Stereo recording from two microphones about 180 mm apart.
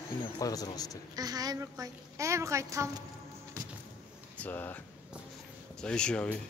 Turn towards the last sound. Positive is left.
turn(degrees=5)  # may be behind; listen again after turning